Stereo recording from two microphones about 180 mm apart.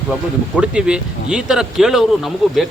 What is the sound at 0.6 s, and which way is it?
Speech, 5° right (ahead or behind).